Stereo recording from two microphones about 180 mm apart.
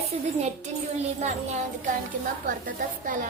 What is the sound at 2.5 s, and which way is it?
Speech, 50° right (ahead or behind).